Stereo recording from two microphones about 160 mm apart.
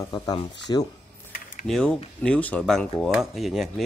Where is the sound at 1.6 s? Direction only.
5° left (ahead or behind).